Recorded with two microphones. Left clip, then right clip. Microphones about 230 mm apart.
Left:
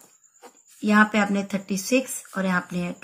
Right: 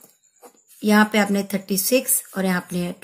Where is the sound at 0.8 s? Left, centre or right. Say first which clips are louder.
Right 2 dB; right.